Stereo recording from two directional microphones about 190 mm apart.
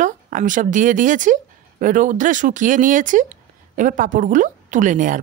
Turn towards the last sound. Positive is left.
turn(degrees=-45)  # may be behind; listen again after turning